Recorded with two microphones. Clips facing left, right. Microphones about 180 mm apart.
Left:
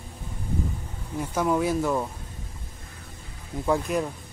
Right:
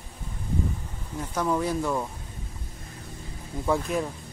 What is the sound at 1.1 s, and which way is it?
Speech, 10° left (ahead or behind).